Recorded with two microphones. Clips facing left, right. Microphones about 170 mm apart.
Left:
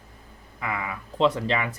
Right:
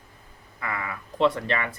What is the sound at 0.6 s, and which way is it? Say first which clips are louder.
Speech: left 2 dB; 15° left (ahead or behind).